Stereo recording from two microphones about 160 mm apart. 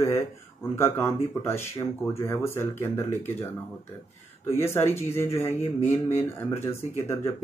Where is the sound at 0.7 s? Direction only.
15° left (ahead or behind).